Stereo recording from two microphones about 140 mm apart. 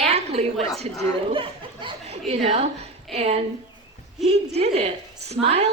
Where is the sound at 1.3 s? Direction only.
40° right (ahead or behind).